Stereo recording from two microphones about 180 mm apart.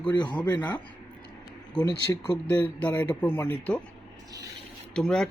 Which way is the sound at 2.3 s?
10° left (ahead or behind).